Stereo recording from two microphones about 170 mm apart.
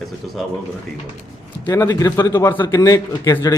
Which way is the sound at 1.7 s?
20° left (ahead or behind).